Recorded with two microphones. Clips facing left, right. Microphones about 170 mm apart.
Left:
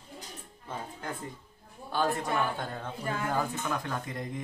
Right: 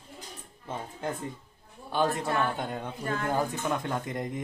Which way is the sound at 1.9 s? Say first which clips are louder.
Right 2 dB; 20° right (ahead or behind).